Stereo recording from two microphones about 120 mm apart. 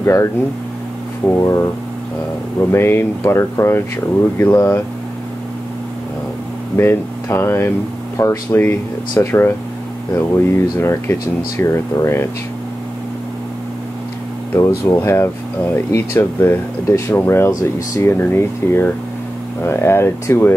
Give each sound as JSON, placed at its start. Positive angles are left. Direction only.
{"t": 0.0, "sound": "speech", "side_deg": 25}
{"t": 2.6, "sound": "speech", "side_deg": 20}
{"t": 6.8, "sound": "speech", "side_deg": 20}
{"t": 14.5, "sound": "speech", "side_deg": 20}